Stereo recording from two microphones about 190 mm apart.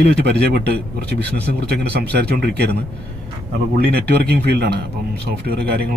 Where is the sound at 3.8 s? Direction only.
60° right (ahead or behind).